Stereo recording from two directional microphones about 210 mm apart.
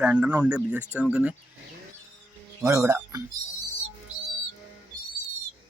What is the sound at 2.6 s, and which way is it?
Speech, 15° right (ahead or behind).